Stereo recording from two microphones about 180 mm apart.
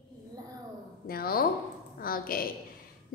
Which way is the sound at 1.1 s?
55° left (ahead or behind).